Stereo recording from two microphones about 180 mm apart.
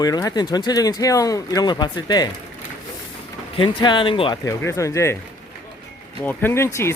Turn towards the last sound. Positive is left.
turn(degrees=15)  # may be behind; listen again after turning